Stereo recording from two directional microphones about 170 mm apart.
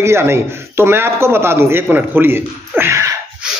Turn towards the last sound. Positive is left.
turn(degrees=-15)  # may be behind; listen again after turning